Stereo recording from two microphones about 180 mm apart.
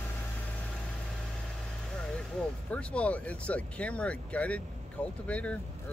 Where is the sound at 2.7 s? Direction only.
5° left (ahead or behind).